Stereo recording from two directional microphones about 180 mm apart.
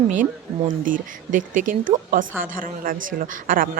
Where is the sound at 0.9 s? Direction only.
50° right (ahead or behind).